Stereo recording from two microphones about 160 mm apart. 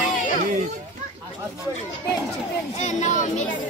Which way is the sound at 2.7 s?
50° left (ahead or behind).